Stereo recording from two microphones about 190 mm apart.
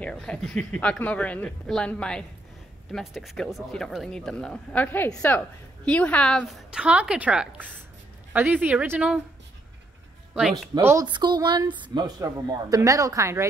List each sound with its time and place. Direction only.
0.0 s speech: 5° left (ahead or behind)
10.7 s a woman's voice: 15° right (ahead or behind)